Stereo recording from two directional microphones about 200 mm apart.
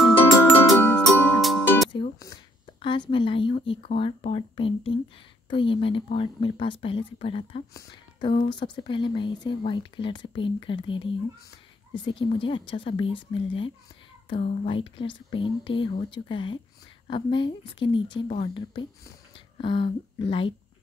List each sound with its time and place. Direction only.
0.0 s music: 10° left (ahead or behind)
1.9 s music: 20° left (ahead or behind)
3.1 s speech: 25° left (ahead or behind)